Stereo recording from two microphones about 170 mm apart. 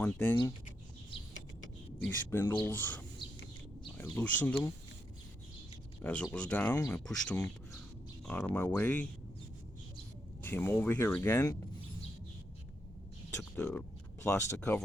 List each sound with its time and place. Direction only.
0.0 s speech: 5° left (ahead or behind)
1.1 s vehicle: 30° left (ahead or behind)
2.0 s speech: 15° left (ahead or behind)
6.0 s speech: 10° left (ahead or behind)
10.4 s speech: 10° left (ahead or behind)
13.7 s speech: 10° left (ahead or behind)